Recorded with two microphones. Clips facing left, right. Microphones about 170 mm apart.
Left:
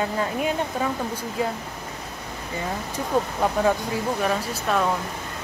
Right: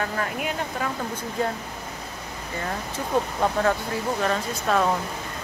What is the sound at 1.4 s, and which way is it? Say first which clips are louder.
Speech: even; 5° left (ahead or behind).